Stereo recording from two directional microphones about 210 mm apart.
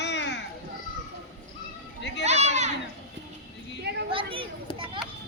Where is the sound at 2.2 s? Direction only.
30° right (ahead or behind).